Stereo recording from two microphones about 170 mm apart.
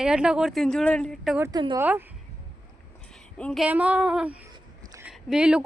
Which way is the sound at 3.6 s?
10° right (ahead or behind).